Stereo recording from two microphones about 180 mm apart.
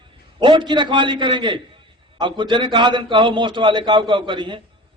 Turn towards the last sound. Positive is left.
turn(degrees=-25)  # may be behind; listen again after turning